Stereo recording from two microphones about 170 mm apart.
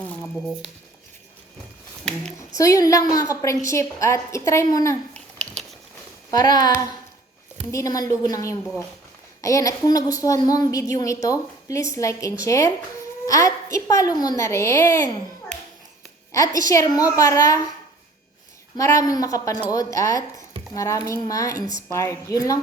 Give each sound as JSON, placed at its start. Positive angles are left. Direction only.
{"t": 2.6, "sound": "a woman's voice", "side_deg": 20}
{"t": 5.1, "sound": "a sound", "side_deg": 5}
{"t": 6.3, "sound": "a woman's voice", "side_deg": 25}
{"t": 16.3, "sound": "a woman's voice", "side_deg": 20}
{"t": 18.8, "sound": "a woman's voice", "side_deg": 20}